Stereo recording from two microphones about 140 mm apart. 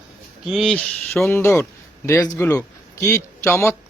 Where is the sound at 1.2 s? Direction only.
15° left (ahead or behind).